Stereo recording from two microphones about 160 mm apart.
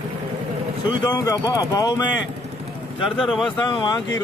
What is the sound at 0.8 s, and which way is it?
Speech, 25° left (ahead or behind).